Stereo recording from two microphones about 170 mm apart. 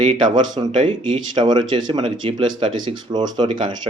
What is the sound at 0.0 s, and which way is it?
Speech, 30° right (ahead or behind).